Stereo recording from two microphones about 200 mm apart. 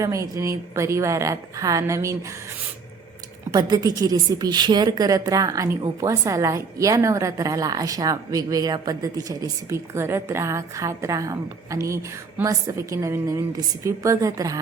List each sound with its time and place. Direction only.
0.0 s a woman's voice: 15° right (ahead or behind)
3.5 s a woman's voice: 20° right (ahead or behind)